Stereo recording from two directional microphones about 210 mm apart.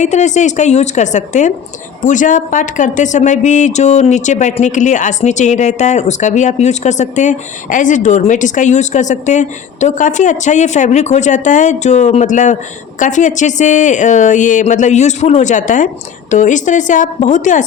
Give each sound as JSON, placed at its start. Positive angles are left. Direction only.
{"t": 0.0, "sound": "speech", "side_deg": 35}